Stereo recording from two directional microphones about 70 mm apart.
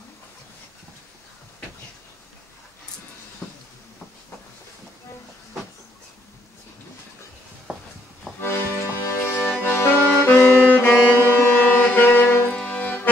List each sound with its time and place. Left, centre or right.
3.4 s a sound: centre
8.4 s accordion: left
9.7 s music: left
12.5 s accordion: left